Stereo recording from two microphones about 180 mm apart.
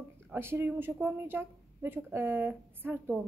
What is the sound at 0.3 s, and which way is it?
A woman's voice, 10° right (ahead or behind).